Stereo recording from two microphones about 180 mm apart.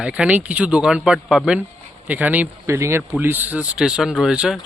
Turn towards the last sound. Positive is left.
turn(degrees=-5)  # may be behind; listen again after turning